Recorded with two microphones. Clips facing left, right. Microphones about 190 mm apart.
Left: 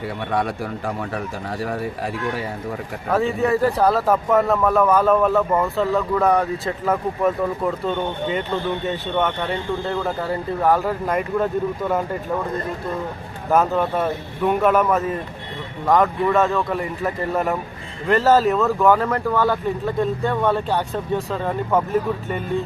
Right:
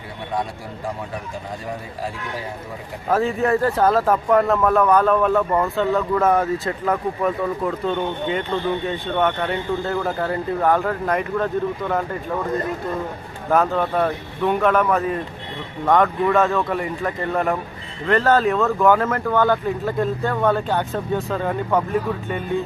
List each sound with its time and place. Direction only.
0.3 s speech: 65° left (ahead or behind)
3.1 s speech: centre (ahead or behind)
13.5 s speech: 5° left (ahead or behind)